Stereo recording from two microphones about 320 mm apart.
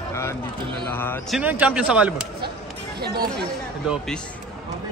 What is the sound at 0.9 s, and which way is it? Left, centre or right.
Speech, centre.